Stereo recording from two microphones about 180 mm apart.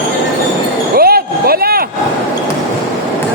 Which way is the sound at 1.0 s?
55° right (ahead or behind).